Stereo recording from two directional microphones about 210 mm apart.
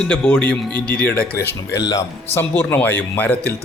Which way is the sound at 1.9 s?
10° left (ahead or behind).